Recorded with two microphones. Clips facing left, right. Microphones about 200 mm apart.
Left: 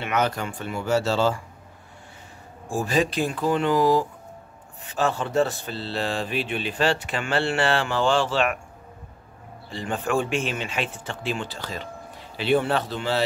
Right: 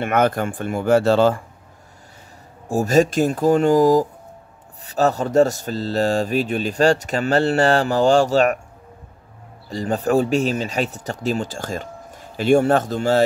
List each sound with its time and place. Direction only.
0.0 s speech: 55° right (ahead or behind)
2.7 s speech: 45° right (ahead or behind)
9.7 s speech: 40° right (ahead or behind)